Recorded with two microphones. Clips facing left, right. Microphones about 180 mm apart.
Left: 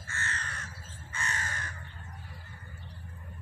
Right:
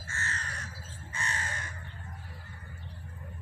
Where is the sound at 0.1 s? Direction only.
40° right (ahead or behind).